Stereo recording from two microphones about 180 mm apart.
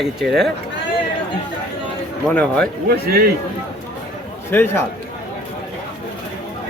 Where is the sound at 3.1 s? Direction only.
55° right (ahead or behind).